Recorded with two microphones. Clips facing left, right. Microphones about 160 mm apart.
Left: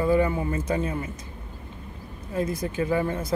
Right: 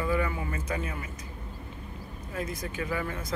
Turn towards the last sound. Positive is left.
turn(degrees=30)  # may be behind; listen again after turning